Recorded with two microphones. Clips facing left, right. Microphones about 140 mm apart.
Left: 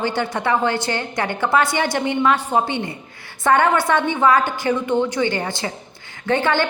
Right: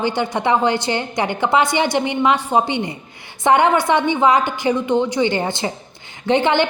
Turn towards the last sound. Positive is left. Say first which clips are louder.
# right 3 dB
turn(degrees=-20)  # may be behind; listen again after turning